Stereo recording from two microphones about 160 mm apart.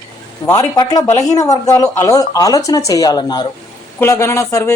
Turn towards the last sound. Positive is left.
turn(degrees=20)  # may be behind; listen again after turning